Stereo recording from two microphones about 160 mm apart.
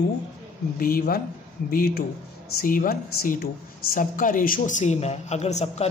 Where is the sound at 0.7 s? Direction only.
65° left (ahead or behind).